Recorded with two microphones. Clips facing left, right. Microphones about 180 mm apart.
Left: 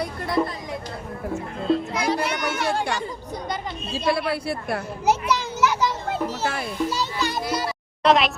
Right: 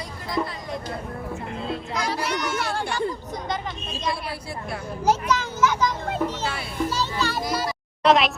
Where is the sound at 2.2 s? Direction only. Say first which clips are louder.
Left 1 dB; 60° left (ahead or behind).